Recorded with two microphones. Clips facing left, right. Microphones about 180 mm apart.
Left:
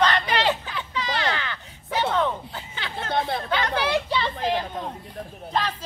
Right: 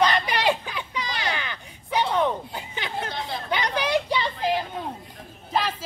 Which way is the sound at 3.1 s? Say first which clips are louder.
Left 7 dB; 55° left (ahead or behind).